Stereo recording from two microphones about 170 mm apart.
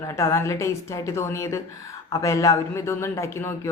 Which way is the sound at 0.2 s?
15° left (ahead or behind).